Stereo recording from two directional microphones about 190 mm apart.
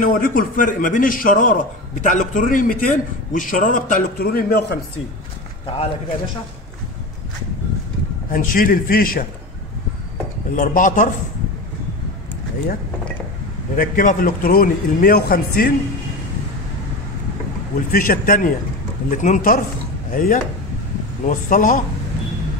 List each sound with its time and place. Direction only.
0.0 s a man's voice: 45° left (ahead or behind)
8.3 s a man's voice: 45° left (ahead or behind)
10.5 s a man's voice: 45° left (ahead or behind)
13.7 s a man's voice: 45° left (ahead or behind)
17.9 s a man's voice: 50° left (ahead or behind)